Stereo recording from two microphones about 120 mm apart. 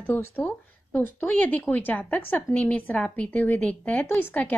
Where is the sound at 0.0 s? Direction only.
15° left (ahead or behind).